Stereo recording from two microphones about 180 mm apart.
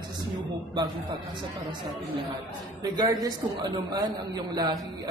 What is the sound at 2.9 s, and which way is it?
Speech, 20° right (ahead or behind).